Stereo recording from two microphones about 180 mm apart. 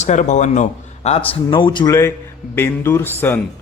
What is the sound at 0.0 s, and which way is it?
A man's voice, 40° left (ahead or behind).